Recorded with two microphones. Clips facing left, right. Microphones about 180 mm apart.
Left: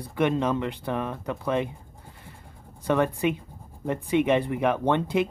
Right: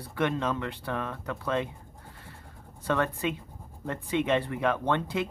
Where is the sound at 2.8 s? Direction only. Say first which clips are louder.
Left 5 dB; 15° left (ahead or behind).